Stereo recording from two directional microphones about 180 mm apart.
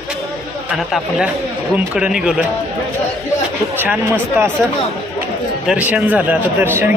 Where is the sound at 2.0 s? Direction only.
5° right (ahead or behind).